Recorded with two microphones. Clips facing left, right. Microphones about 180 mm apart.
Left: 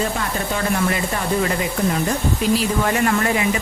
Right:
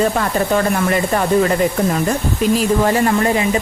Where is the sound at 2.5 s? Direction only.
35° right (ahead or behind).